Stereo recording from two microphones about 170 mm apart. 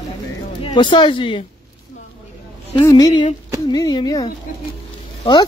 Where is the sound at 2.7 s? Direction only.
25° left (ahead or behind).